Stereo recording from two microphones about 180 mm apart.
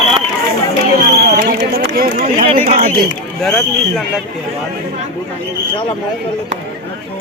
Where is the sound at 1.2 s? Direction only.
55° right (ahead or behind).